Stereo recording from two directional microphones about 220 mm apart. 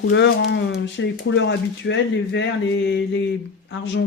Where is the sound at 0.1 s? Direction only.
55° left (ahead or behind).